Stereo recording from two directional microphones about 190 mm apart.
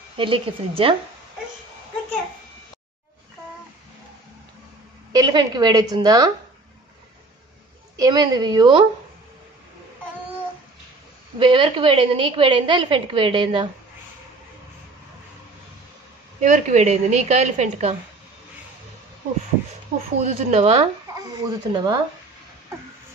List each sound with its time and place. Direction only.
0.2 s a woman's voice: 25° right (ahead or behind)
5.1 s a woman's voice: 20° right (ahead or behind)
7.9 s a woman's voice: 20° right (ahead or behind)
11.3 s a woman's voice: 25° right (ahead or behind)
16.3 s a woman's voice: 40° right (ahead or behind)
20.2 s a woman's voice: 35° right (ahead or behind)
21.1 s a woman's voice: 20° right (ahead or behind)